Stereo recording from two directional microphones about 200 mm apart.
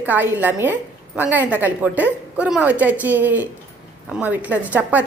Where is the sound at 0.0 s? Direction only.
10° right (ahead or behind).